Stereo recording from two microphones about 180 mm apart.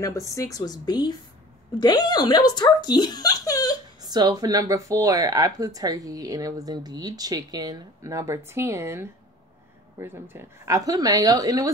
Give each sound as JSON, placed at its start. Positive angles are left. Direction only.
{"t": 0.0, "sound": "speech", "side_deg": 15}
{"t": 4.0, "sound": "speech", "side_deg": -20}